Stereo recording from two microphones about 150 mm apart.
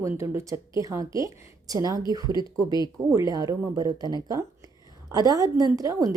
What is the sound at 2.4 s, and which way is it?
Speech, 30° left (ahead or behind).